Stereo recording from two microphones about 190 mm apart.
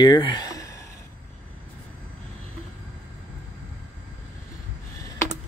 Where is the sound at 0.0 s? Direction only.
25° left (ahead or behind).